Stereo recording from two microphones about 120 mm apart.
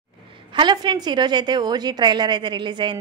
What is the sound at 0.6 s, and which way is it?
A woman's voice, 40° right (ahead or behind).